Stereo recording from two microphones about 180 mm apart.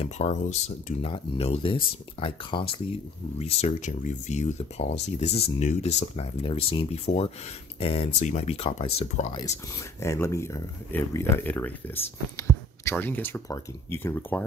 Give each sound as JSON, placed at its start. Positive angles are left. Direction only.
{"t": 0.0, "sound": "speech", "side_deg": 40}
{"t": 10.0, "sound": "speech", "side_deg": 15}